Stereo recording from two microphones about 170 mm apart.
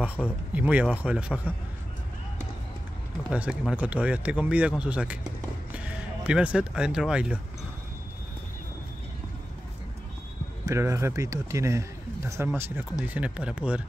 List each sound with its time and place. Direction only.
0.0 s speech: 10° right (ahead or behind)
3.3 s speech: 5° right (ahead or behind)
6.2 s speech: 5° right (ahead or behind)
10.6 s speech: 20° right (ahead or behind)